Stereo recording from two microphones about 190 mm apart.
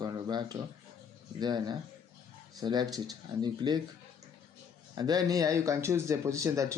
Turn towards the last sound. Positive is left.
turn(degrees=-15)  # may be behind; listen again after turning